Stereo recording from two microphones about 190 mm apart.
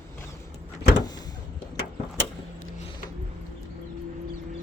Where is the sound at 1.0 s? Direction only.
20° left (ahead or behind).